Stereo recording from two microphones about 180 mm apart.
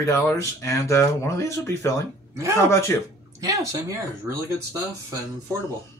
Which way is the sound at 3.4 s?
20° right (ahead or behind).